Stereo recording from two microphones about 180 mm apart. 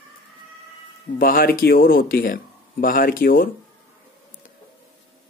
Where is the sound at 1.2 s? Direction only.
55° left (ahead or behind).